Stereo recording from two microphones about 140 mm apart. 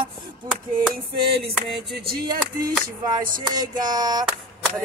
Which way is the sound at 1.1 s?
40° right (ahead or behind).